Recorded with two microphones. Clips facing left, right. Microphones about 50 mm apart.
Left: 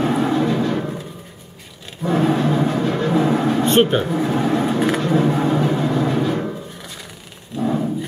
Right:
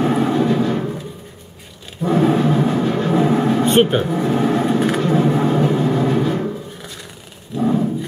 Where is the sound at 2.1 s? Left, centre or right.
Centre.